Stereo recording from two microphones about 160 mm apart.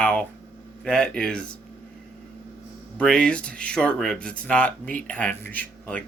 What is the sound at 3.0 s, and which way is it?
Speech, 5° left (ahead or behind).